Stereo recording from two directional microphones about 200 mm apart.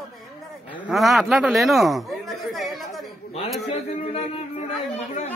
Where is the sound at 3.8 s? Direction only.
30° left (ahead or behind).